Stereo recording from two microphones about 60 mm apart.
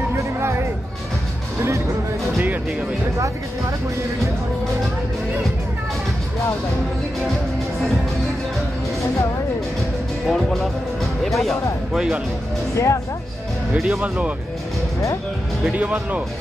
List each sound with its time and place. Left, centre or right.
0.4 s music: right
10.2 s speech: centre
12.7 s speech: left
13.7 s speech: centre
15.6 s speech: right